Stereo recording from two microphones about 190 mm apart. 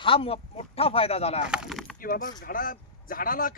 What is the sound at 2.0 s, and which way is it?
A man's voice, 50° left (ahead or behind).